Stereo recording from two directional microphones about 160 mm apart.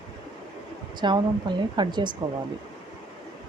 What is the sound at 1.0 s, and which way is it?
Speech, 30° right (ahead or behind).